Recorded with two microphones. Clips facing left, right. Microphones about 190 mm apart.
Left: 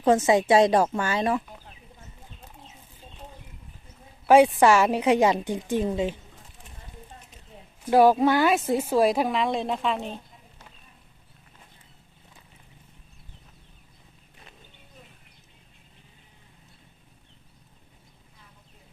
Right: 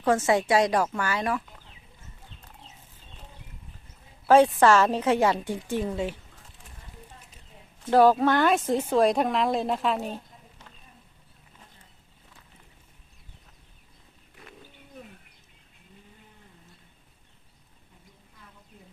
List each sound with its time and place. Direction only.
0.0 s a woman's voice: 20° left (ahead or behind)
4.3 s a woman's voice: 10° left (ahead or behind)
7.8 s speech: 10° left (ahead or behind)